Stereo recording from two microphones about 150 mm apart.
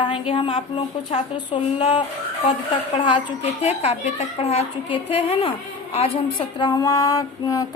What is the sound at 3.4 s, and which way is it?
A woman's voice, 45° left (ahead or behind).